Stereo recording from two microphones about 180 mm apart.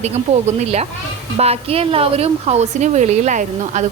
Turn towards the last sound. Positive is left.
turn(degrees=-40)  # may be behind; listen again after turning